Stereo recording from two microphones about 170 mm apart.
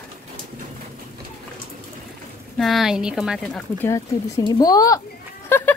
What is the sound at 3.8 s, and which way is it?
Speech, 15° left (ahead or behind).